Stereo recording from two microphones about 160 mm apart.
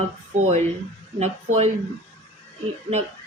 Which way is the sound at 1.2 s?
45° right (ahead or behind).